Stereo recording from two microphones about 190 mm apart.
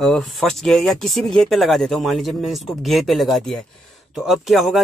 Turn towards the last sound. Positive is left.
turn(degrees=0)  # may be behind; listen again after turning